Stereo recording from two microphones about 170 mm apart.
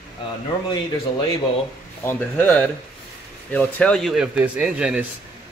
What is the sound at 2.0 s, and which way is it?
Speech, 10° left (ahead or behind).